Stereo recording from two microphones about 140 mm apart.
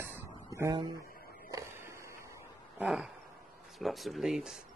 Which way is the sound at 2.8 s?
5° right (ahead or behind).